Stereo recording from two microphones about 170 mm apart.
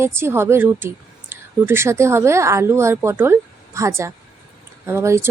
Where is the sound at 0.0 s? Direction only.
15° right (ahead or behind).